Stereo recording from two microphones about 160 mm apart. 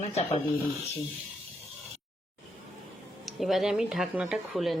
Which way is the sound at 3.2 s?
Centre (ahead or behind).